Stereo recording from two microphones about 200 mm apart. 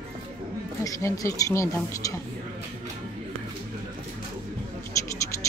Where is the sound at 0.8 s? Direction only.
15° left (ahead or behind).